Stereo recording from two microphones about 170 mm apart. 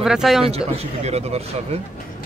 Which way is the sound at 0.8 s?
40° right (ahead or behind).